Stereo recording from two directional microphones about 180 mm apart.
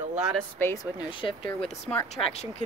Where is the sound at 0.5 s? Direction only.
15° left (ahead or behind).